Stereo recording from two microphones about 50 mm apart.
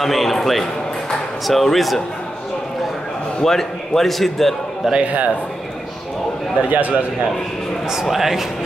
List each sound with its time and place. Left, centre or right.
0.0 s a man's voice: centre
3.4 s a man's voice: centre
4.9 s a man's voice: right
6.7 s a man's voice: right
7.9 s a man's voice: centre